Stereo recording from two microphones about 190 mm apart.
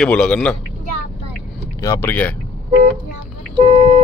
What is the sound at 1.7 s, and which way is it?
Speech, 15° left (ahead or behind).